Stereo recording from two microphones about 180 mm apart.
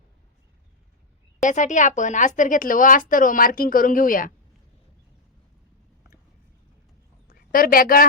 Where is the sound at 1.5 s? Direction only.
45° left (ahead or behind).